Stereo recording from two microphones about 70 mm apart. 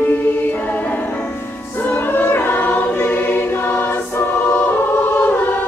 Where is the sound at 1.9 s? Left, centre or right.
Left.